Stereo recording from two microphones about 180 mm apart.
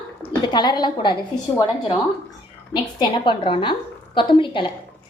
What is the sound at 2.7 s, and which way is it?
A woman's voice, 25° left (ahead or behind).